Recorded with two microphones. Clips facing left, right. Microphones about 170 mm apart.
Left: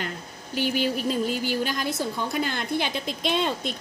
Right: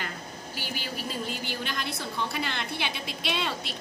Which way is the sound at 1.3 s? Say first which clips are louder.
Left 7 dB; 45° left (ahead or behind).